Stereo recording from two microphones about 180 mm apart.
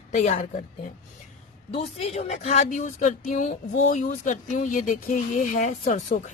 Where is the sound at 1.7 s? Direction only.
35° left (ahead or behind).